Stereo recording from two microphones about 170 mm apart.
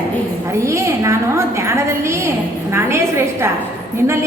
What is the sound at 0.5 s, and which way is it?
A woman's voice, 15° right (ahead or behind).